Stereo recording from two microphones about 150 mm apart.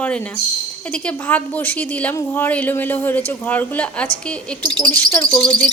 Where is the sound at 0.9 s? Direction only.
10° left (ahead or behind).